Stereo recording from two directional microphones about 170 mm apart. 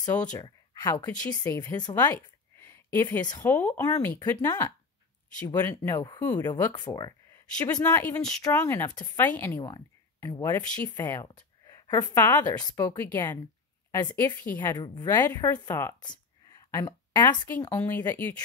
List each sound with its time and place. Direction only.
0.3 s speech: 25° left (ahead or behind)
2.1 s a sound: 15° left (ahead or behind)
3.3 s speech: 15° left (ahead or behind)
7.6 s speech: 10° left (ahead or behind)
8.3 s speech: 20° left (ahead or behind)
9.1 s speech: 10° left (ahead or behind)
14.6 s speech: 20° left (ahead or behind)